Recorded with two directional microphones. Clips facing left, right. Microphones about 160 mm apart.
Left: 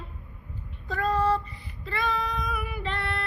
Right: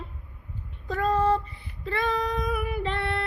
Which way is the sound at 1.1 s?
20° right (ahead or behind).